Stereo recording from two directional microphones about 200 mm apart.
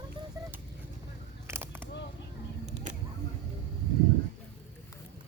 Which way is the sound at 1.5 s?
10° right (ahead or behind).